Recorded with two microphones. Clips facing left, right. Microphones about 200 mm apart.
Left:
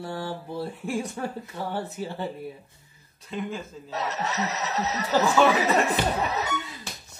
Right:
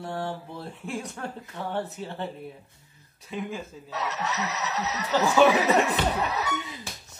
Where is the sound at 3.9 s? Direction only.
30° left (ahead or behind).